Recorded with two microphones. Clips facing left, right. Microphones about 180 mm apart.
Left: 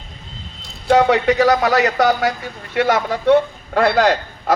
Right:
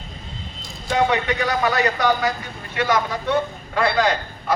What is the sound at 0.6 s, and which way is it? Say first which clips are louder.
A man's voice: left 7 dB; 65° left (ahead or behind).